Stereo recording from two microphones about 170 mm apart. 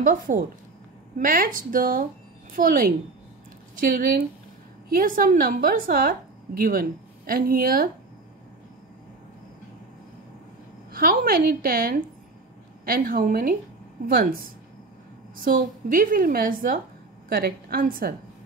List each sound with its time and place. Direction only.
0.0 s a woman's voice: 55° right (ahead or behind)
11.0 s a woman's voice: 55° right (ahead or behind)